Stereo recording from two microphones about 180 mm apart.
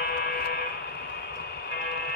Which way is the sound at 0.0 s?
60° left (ahead or behind).